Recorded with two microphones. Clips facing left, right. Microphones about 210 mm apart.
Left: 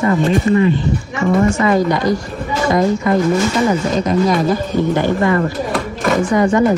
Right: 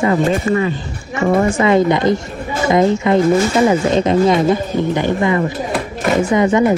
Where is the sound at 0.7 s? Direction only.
50° right (ahead or behind).